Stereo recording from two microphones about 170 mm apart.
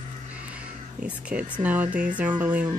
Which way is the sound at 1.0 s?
5° right (ahead or behind).